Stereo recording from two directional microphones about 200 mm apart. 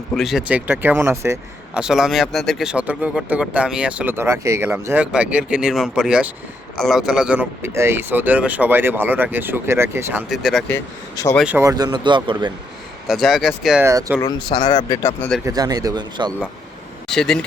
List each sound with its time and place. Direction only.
0.1 s speech: centre (ahead or behind)
10.7 s speech: 15° left (ahead or behind)
11.3 s speech: 10° right (ahead or behind); by 12.5 s 25° right (ahead or behind)
13.1 s speech: centre (ahead or behind)
13.8 s speech: 15° right (ahead or behind)
14.2 s speech: 20° left (ahead or behind)
14.8 s speech: 15° left (ahead or behind)
15.4 s speech: 20° right (ahead or behind)
17.1 s speech: 5° left (ahead or behind)